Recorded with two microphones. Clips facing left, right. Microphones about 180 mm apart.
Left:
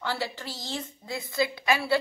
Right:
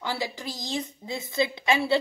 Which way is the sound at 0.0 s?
15° right (ahead or behind).